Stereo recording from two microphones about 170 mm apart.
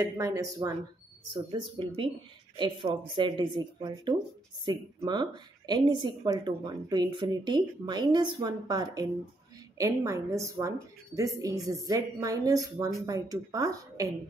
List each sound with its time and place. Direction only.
0.0 s speech: 20° right (ahead or behind)
1.3 s a woman's voice: 30° right (ahead or behind)